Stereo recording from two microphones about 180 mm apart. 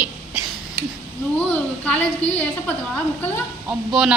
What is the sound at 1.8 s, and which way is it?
A woman's voice, 10° left (ahead or behind).